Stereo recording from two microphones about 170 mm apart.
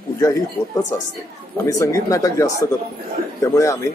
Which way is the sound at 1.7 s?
20° left (ahead or behind).